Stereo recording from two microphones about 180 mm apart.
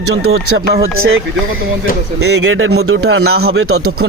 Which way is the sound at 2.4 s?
90° right.